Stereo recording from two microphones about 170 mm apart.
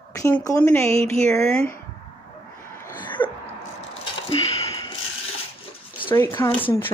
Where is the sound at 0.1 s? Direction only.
20° left (ahead or behind).